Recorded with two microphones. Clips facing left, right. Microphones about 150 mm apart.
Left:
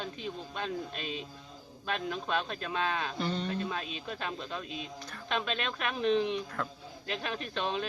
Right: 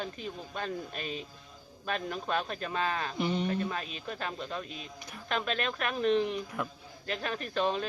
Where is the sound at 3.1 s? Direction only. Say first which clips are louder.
Right 3 dB; 15° right (ahead or behind).